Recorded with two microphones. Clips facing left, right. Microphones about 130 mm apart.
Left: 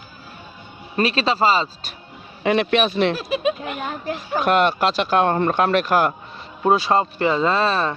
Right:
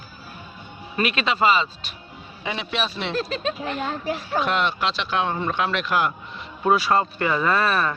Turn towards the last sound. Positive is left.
turn(degrees=25)  # may be behind; listen again after turning